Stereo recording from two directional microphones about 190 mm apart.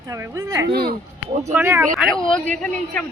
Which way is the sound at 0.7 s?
55° right (ahead or behind).